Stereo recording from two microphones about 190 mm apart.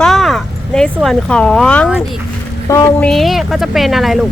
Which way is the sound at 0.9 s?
Centre (ahead or behind).